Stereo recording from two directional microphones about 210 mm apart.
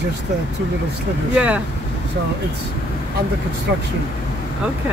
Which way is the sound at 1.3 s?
5° right (ahead or behind).